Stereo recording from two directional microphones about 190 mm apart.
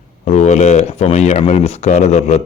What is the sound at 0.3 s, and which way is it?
Speech, 35° left (ahead or behind).